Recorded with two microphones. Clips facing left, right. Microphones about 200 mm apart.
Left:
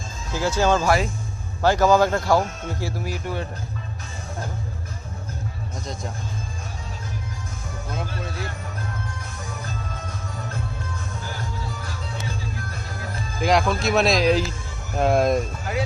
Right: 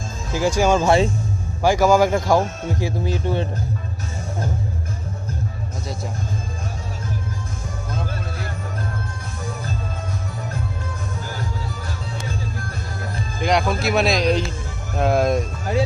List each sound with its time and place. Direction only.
0.3 s speech: 15° right (ahead or behind)
0.9 s speech: 25° right (ahead or behind)
1.6 s speech: 10° right (ahead or behind)
13.4 s speech: centre (ahead or behind)